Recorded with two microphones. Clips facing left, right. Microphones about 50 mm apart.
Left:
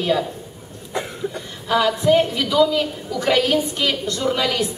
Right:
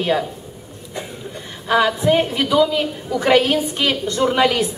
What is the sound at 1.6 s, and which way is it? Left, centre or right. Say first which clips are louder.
A woman's voice: right 1 dB; right.